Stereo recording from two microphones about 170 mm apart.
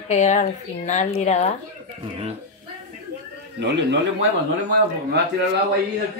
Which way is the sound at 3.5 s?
85° right.